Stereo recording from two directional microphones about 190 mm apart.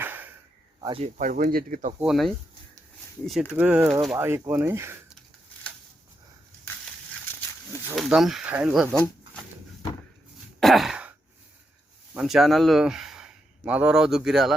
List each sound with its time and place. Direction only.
0.0 s a sound: 10° right (ahead or behind)
0.8 s speech: 25° right (ahead or behind)
1.0 s speech: 40° right (ahead or behind)
2.0 s speech: centre (ahead or behind)
3.5 s speech: 5° right (ahead or behind)
7.9 s speech: centre (ahead or behind)
10.6 s sigh: centre (ahead or behind)
12.1 s speech: centre (ahead or behind)